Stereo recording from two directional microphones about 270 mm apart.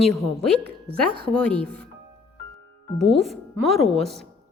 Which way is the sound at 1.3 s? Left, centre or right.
Centre.